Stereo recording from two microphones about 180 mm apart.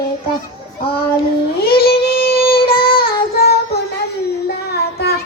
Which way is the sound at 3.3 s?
60° left (ahead or behind).